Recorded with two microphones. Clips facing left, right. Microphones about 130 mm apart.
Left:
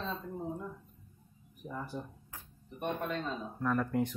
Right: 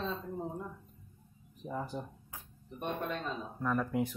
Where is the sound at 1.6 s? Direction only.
20° right (ahead or behind).